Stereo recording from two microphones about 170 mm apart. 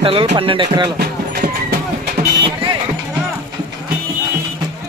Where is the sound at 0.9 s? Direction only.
70° right (ahead or behind).